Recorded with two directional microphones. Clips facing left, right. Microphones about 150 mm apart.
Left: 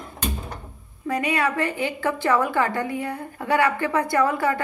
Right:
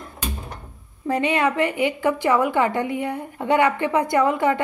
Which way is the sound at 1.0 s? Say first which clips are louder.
Right 3 dB; 25° right (ahead or behind).